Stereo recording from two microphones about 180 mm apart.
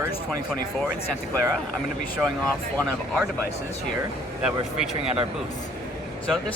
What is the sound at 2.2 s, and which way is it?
Speech, 5° left (ahead or behind).